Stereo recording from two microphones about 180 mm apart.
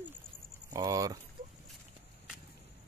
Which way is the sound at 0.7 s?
20° right (ahead or behind).